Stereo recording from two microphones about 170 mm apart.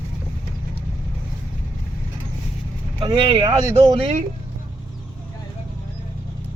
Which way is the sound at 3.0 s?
30° right (ahead or behind).